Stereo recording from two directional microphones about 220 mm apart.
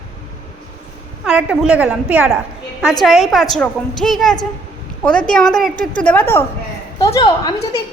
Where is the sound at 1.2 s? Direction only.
5° right (ahead or behind).